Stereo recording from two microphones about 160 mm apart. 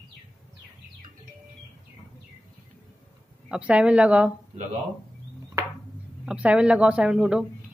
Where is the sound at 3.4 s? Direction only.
5° right (ahead or behind).